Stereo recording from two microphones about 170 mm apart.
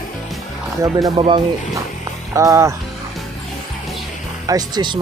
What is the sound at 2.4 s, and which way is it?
Speech, 15° right (ahead or behind).